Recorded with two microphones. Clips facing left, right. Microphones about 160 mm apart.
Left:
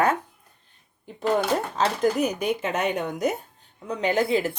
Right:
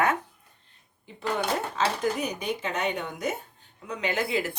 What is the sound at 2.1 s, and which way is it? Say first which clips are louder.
Speech: left 6 dB; 50° left (ahead or behind).